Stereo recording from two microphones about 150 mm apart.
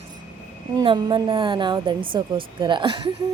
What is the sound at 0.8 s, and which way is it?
A woman's voice, 25° right (ahead or behind).